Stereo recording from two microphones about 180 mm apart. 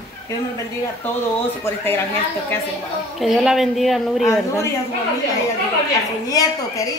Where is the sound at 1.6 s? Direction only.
15° left (ahead or behind).